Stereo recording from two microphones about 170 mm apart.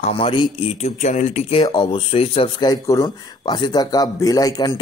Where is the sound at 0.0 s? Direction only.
35° left (ahead or behind).